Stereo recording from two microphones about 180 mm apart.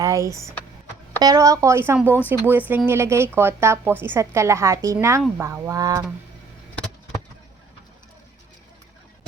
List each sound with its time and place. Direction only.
0.0 s a woman's voice: 15° right (ahead or behind)